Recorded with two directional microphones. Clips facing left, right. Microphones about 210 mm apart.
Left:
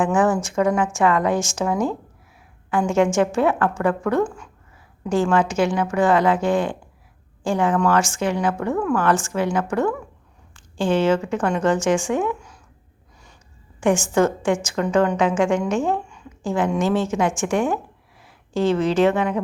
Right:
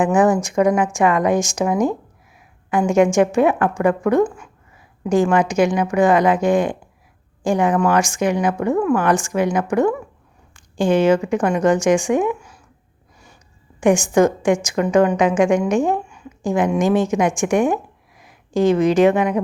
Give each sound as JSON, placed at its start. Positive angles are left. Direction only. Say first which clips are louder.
{"t": 0.0, "sound": "a woman's voice", "louder": "right 3 dB", "side_deg": -15}
{"t": 13.7, "sound": "a woman's voice", "louder": "right 4 dB", "side_deg": -15}